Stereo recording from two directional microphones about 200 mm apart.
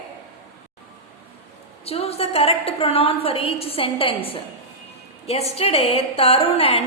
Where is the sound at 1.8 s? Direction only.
30° left (ahead or behind).